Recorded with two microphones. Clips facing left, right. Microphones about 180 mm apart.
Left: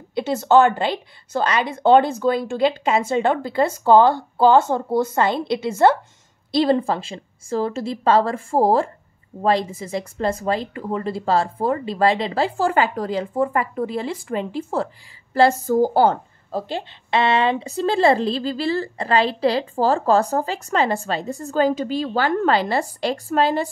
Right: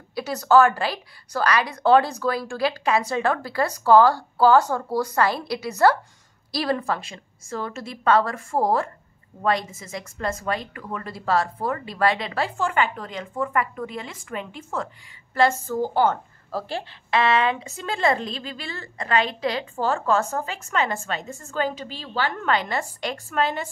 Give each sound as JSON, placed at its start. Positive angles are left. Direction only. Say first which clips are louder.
{"t": 0.1, "sound": "a woman's voice", "louder": "left 2 dB", "side_deg": 25}
{"t": 16.5, "sound": "a woman's voice", "louder": "left 3 dB", "side_deg": 20}